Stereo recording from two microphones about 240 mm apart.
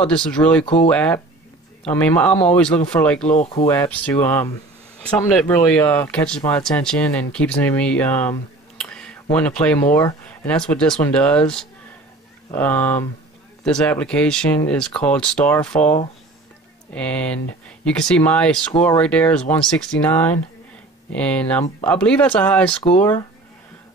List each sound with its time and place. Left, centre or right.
0.0 s speech: centre
3.3 s speech: left
3.6 s speech: centre